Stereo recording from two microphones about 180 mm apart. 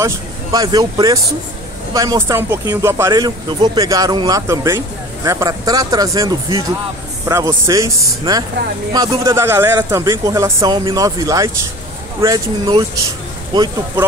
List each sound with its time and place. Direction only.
0.0 s speech: 20° right (ahead or behind)